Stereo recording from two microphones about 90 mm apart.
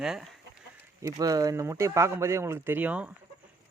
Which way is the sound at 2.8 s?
15° right (ahead or behind).